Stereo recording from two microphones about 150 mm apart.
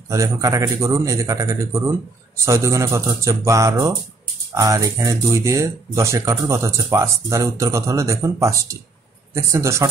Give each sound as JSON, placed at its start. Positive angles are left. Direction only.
{"t": 0.1, "sound": "speech", "side_deg": -20}